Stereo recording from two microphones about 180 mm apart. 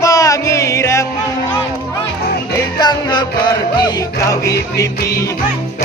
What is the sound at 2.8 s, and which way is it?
Music, 25° left (ahead or behind).